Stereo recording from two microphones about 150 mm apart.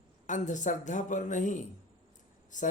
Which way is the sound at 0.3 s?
55° left (ahead or behind).